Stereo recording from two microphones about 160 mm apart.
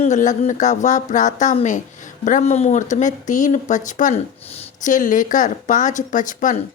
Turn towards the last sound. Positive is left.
turn(degrees=55)  # may be behind; listen again after turning